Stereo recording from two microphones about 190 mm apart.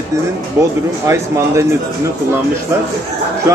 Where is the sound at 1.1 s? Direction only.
15° right (ahead or behind).